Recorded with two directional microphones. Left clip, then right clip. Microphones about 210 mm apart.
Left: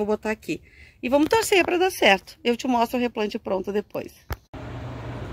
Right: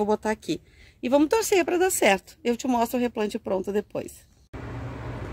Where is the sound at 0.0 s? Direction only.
5° right (ahead or behind).